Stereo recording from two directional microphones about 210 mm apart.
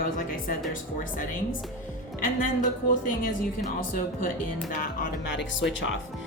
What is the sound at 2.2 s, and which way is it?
Speech, 40° left (ahead or behind).